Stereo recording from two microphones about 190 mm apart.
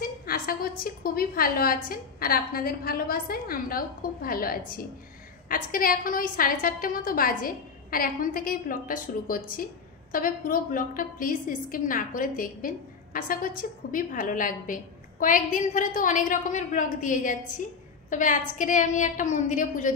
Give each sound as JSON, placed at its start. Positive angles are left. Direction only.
{"t": 0.0, "sound": "a woman's voice", "side_deg": 50}